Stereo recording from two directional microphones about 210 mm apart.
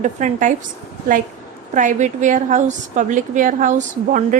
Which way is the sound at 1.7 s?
35° right (ahead or behind).